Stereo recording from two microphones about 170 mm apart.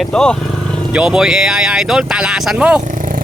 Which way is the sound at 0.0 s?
5° left (ahead or behind).